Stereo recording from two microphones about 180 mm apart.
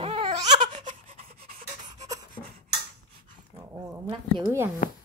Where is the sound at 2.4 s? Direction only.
25° left (ahead or behind).